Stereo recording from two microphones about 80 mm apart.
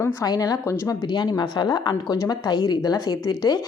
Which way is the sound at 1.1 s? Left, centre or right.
Left.